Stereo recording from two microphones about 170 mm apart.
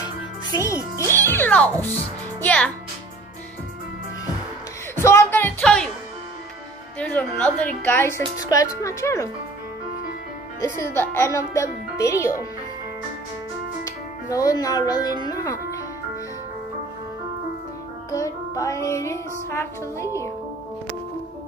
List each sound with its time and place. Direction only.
0.0 s music: 20° left (ahead or behind)
2.4 s a child's voice: 5° left (ahead or behind)
4.9 s music: 15° left (ahead or behind)
7.0 s music: 10° left (ahead or behind)
8.4 s speech: 20° left (ahead or behind)
8.8 s music: 15° left (ahead or behind)
10.6 s music: 15° left (ahead or behind)
13.8 s speech: 20° left (ahead or behind)
18.1 s music: 20° left (ahead or behind)